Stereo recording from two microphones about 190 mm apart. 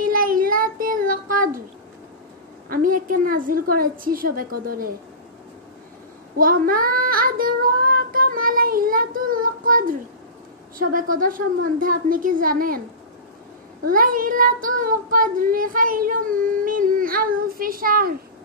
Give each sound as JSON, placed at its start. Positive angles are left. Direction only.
{"t": 0.0, "sound": "child singing", "side_deg": -50}
{"t": 2.7, "sound": "a woman's voice", "side_deg": -45}
{"t": 6.3, "sound": "child singing", "side_deg": -50}
{"t": 10.8, "sound": "a woman's voice", "side_deg": -45}
{"t": 13.8, "sound": "child singing", "side_deg": -50}